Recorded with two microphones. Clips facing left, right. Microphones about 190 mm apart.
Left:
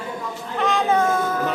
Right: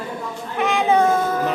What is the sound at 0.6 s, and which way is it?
Cat, 10° right (ahead or behind).